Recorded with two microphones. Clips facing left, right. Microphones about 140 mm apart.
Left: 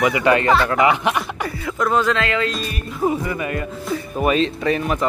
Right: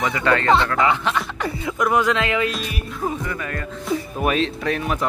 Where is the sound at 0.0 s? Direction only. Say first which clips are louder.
Left 3 dB; 15° left (ahead or behind).